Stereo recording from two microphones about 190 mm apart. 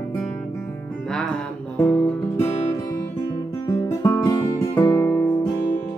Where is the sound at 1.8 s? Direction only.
10° left (ahead or behind).